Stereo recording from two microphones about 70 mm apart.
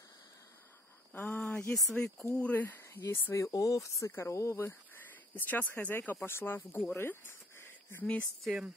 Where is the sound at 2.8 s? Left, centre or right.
Left.